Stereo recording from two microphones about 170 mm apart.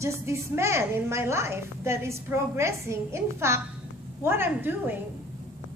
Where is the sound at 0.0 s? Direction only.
15° right (ahead or behind).